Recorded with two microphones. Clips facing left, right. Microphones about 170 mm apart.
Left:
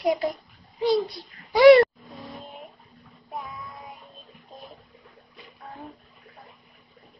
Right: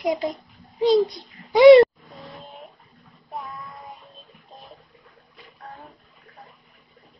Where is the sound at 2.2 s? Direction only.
Centre (ahead or behind).